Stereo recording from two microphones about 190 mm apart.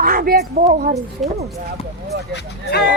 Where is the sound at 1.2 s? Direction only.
Centre (ahead or behind).